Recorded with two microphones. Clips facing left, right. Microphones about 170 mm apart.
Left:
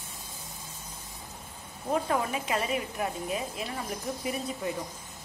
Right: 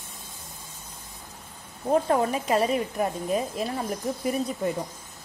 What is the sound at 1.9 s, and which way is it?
A woman's voice, 40° right (ahead or behind).